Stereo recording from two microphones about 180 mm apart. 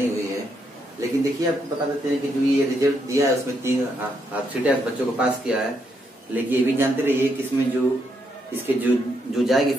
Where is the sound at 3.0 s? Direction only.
15° right (ahead or behind).